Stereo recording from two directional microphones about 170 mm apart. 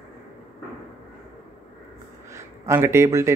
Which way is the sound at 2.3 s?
15° right (ahead or behind).